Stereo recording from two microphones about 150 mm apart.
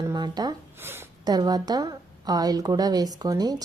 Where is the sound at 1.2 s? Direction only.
25° right (ahead or behind).